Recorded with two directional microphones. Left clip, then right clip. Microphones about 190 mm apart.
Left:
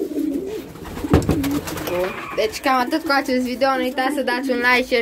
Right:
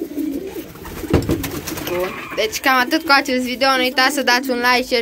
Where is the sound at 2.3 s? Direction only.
Centre (ahead or behind).